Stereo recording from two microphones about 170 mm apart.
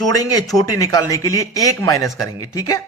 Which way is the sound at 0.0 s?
20° left (ahead or behind).